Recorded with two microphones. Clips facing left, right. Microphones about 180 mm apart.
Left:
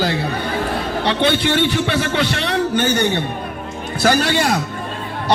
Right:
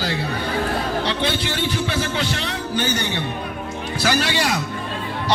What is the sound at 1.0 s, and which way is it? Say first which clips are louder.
A man's voice: left 6 dB; 60° left (ahead or behind).